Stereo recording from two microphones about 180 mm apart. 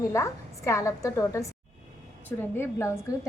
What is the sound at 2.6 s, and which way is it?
Speech, 15° left (ahead or behind).